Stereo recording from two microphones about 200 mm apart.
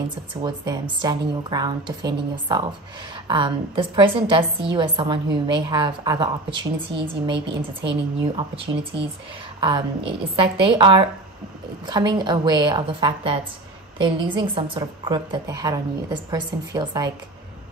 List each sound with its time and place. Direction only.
0.4 s a woman's voice: 20° right (ahead or behind)